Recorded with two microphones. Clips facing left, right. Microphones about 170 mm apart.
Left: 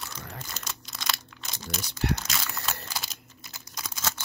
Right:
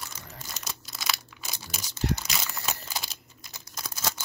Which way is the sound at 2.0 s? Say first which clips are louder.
Even; 65° left (ahead or behind).